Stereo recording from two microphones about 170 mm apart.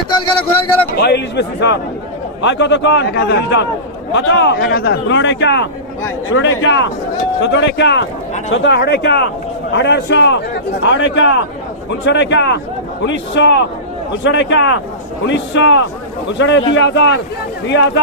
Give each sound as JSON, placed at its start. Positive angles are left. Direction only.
{"t": 0.9, "sound": "a man's voice", "side_deg": 80}